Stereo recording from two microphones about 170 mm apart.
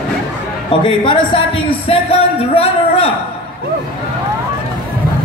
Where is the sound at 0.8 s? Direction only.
30° left (ahead or behind).